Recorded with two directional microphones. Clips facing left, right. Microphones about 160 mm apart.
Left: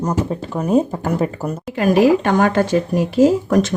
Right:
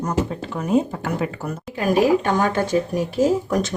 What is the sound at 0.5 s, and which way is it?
Speech, 40° left (ahead or behind).